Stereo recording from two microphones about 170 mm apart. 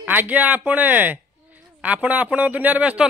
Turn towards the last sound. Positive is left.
turn(degrees=-10)  # may be behind; listen again after turning